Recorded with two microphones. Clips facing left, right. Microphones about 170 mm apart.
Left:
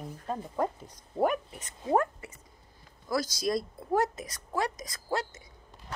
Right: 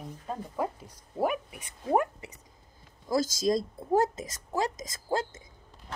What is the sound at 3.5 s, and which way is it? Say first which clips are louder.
A woman's voice: right 2 dB; 25° right (ahead or behind).